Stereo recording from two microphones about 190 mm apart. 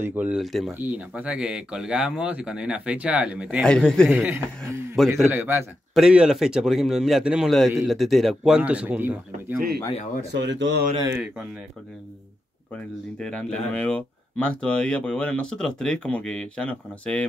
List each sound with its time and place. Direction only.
0.0 s speech: 10° right (ahead or behind)
4.1 s a man's voice: 10° right (ahead or behind)
10.3 s speech: 70° right (ahead or behind)
12.7 s speech: 5° left (ahead or behind)